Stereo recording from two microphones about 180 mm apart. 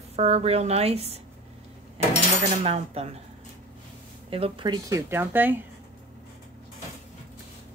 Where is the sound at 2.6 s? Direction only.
35° right (ahead or behind).